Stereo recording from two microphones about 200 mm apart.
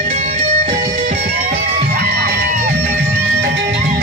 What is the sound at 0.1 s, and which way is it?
Music, 35° right (ahead or behind).